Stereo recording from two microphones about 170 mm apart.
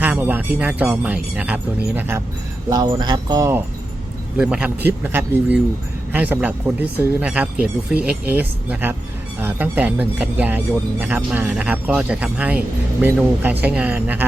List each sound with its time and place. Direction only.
0.0 s speech: 10° right (ahead or behind)
2.6 s speech: 25° right (ahead or behind)
4.4 s speech: 5° right (ahead or behind)